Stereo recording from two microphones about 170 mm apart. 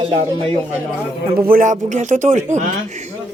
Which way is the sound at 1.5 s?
50° right (ahead or behind).